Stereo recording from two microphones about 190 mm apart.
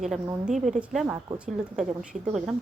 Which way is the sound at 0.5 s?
Centre (ahead or behind).